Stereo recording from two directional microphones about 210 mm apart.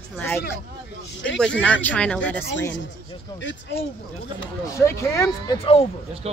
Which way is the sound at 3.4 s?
55° left (ahead or behind).